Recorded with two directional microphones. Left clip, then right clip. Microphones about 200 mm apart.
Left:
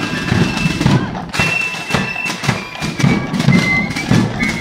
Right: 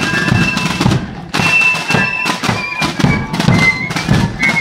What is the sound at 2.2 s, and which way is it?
Music, 20° right (ahead or behind).